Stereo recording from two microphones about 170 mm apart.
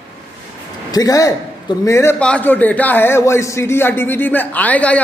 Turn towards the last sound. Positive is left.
turn(degrees=10)  # may be behind; listen again after turning